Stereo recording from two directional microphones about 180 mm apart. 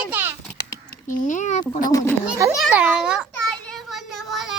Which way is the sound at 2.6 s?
5° right (ahead or behind).